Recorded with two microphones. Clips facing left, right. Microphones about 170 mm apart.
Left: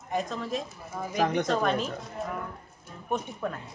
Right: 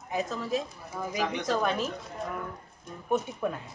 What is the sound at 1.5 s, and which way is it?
Speech, 5° right (ahead or behind).